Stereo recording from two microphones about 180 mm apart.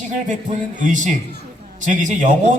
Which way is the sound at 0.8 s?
45° right (ahead or behind).